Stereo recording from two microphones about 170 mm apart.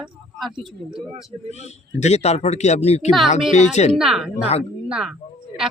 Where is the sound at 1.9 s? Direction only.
40° left (ahead or behind).